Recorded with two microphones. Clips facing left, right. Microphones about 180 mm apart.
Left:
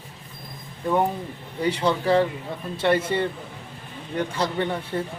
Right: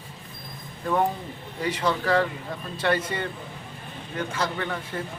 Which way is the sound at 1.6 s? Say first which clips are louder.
Left 3 dB; 30° left (ahead or behind).